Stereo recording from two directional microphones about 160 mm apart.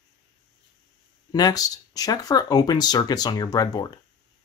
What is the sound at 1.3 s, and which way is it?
Speech, 25° left (ahead or behind).